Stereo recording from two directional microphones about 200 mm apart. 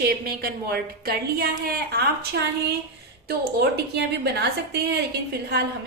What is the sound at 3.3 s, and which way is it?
A woman's voice, 55° right (ahead or behind).